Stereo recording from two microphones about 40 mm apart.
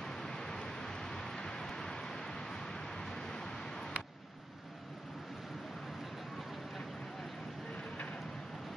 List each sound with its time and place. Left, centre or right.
0.0 s vehicle: centre